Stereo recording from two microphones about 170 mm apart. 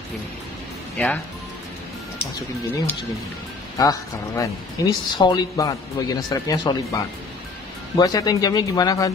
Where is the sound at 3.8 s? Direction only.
20° left (ahead or behind).